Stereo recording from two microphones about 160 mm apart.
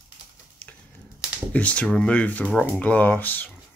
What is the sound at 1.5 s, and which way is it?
Speech, 10° left (ahead or behind).